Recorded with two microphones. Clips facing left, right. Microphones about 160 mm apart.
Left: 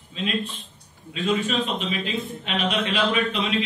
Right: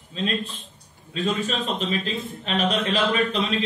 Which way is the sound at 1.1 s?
40° right (ahead or behind).